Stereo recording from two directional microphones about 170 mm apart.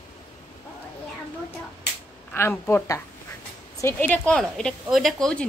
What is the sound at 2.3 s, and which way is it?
A woman's voice, 15° left (ahead or behind).